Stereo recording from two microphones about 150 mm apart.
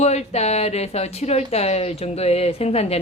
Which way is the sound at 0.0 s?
45° left (ahead or behind).